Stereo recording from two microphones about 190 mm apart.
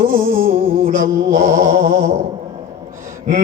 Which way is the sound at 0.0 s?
50° right (ahead or behind).